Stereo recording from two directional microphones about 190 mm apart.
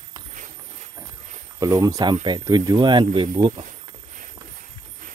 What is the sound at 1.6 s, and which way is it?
Speech, 15° right (ahead or behind).